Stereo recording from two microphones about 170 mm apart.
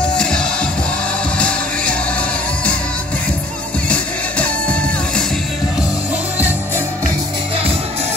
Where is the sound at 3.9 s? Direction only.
5° left (ahead or behind).